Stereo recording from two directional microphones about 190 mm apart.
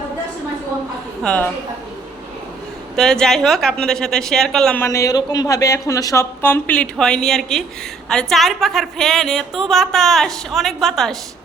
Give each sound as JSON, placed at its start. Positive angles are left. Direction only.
{"t": 1.2, "sound": "a woman's voice", "side_deg": 5}
{"t": 2.9, "sound": "a woman's voice", "side_deg": 5}